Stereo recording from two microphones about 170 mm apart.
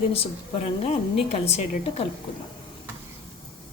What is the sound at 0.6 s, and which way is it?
A woman's voice, 40° left (ahead or behind).